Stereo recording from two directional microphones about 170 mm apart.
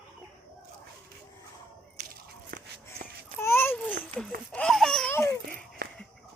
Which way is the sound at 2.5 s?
60° right (ahead or behind).